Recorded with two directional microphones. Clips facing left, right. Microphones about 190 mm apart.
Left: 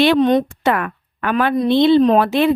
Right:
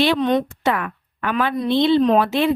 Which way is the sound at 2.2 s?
60° left (ahead or behind).